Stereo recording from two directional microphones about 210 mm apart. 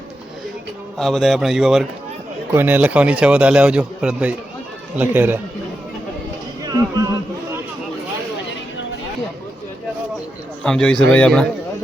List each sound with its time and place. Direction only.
0.9 s a man's voice: centre (ahead or behind)
6.6 s a sound: 15° right (ahead or behind)
10.6 s a man's voice: 5° left (ahead or behind)